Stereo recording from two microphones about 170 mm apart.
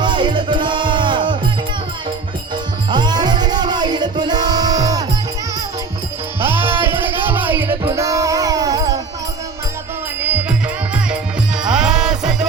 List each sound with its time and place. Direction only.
0.0 s music: 25° right (ahead or behind)
2.9 s music: 25° right (ahead or behind)
6.4 s music: 10° right (ahead or behind)
10.2 s music: 10° right (ahead or behind)
11.6 s music: 5° right (ahead or behind)